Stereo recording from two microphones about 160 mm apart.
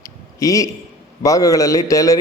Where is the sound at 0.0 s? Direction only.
20° left (ahead or behind).